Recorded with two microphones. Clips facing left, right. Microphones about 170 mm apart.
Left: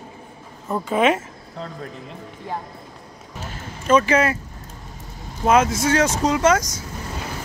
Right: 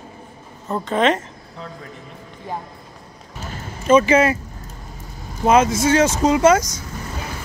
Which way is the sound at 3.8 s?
5° right (ahead or behind).